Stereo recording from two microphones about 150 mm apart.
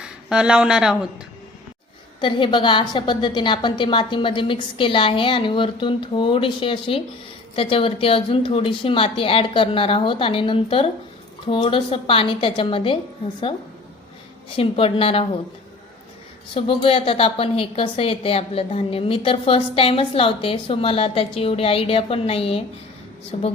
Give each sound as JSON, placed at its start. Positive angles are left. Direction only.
{"t": 0.0, "sound": "speech", "side_deg": -5}
{"t": 2.2, "sound": "a woman's voice", "side_deg": 35}
{"t": 14.5, "sound": "a woman's voice", "side_deg": 40}
{"t": 16.6, "sound": "a woman's voice", "side_deg": 35}